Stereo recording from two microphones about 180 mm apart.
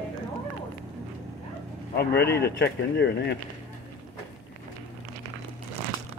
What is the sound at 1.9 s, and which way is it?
Speech, 65° left (ahead or behind).